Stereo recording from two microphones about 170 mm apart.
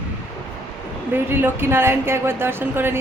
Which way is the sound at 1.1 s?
10° right (ahead or behind).